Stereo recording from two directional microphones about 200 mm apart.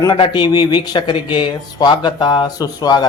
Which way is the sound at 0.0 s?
25° left (ahead or behind).